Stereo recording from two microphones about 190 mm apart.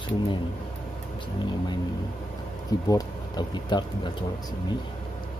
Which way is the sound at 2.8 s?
20° left (ahead or behind).